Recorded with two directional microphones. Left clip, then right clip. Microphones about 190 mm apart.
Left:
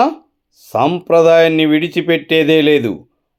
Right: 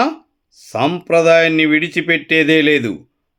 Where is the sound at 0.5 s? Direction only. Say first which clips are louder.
Left 3 dB; 5° right (ahead or behind).